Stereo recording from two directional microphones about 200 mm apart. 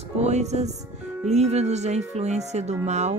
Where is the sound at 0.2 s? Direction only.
35° right (ahead or behind).